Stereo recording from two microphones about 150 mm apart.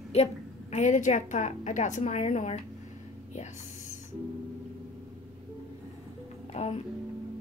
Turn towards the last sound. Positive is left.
turn(degrees=45)  # may be behind; listen again after turning